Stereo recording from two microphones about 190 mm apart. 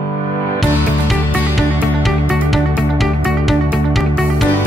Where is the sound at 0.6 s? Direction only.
Centre (ahead or behind).